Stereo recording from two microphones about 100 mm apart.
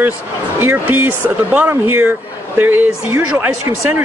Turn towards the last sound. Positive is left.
turn(degrees=-20)  # may be behind; listen again after turning